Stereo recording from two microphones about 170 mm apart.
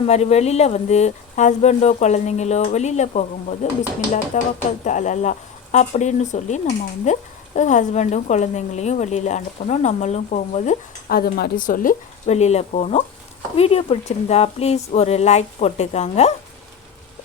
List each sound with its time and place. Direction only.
0.0 s a woman's voice: 40° left (ahead or behind)
11.1 s speech: 65° left (ahead or behind)
12.3 s speech: 40° left (ahead or behind)